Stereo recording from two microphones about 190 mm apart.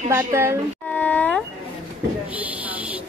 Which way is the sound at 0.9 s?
10° left (ahead or behind).